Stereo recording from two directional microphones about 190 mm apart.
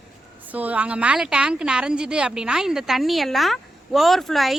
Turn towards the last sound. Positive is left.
turn(degrees=0)  # may be behind; listen again after turning